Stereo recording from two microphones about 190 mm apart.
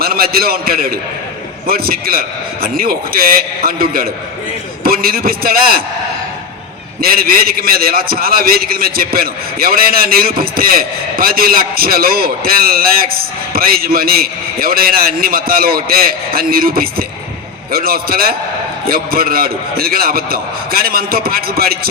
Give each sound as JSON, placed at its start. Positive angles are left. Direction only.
{"t": 0.0, "sound": "a man's voice", "side_deg": -50}
{"t": 7.0, "sound": "a man's voice", "side_deg": -50}